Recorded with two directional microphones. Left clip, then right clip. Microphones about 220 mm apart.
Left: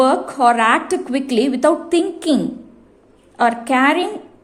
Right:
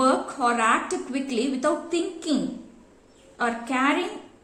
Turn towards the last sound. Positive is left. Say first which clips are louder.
# left 9 dB
turn(degrees=40)  # may be behind; listen again after turning